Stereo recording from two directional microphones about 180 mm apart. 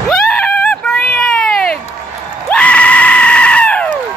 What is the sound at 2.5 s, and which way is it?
Screaming, 5° left (ahead or behind).